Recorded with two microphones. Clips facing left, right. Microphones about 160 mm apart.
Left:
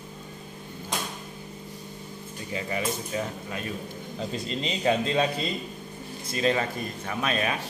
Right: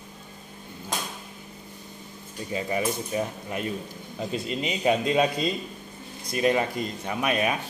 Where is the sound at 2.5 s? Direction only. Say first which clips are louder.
Right 3 dB; 20° right (ahead or behind).